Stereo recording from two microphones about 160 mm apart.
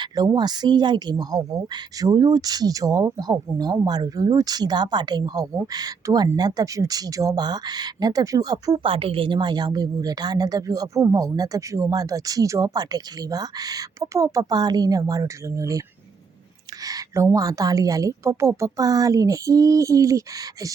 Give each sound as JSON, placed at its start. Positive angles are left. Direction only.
{"t": 0.0, "sound": "frog", "side_deg": -25}
{"t": 8.9, "sound": "frog", "side_deg": -35}
{"t": 16.8, "sound": "a sound", "side_deg": -20}
{"t": 17.3, "sound": "frog", "side_deg": -20}